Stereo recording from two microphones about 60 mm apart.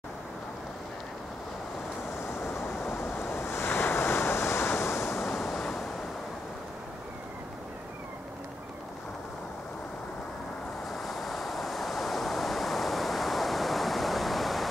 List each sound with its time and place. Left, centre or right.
2.4 s vehicle: left
2.9 s waves: left
5.2 s waves: centre
10.9 s waves: centre